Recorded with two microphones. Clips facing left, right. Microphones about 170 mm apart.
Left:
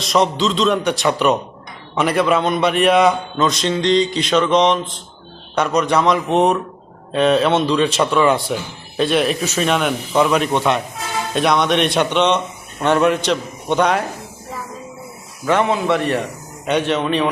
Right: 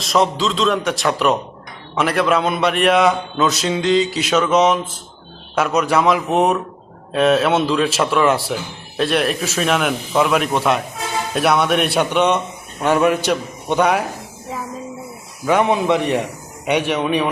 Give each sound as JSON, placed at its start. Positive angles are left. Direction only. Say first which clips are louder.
{"t": 0.0, "sound": "a man's voice", "louder": "left 1 dB", "side_deg": 0}
{"t": 15.4, "sound": "a man's voice", "louder": "right 1 dB", "side_deg": -15}